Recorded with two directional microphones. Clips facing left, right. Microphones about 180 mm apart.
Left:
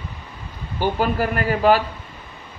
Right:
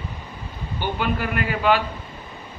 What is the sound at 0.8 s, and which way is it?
Speech, 40° left (ahead or behind).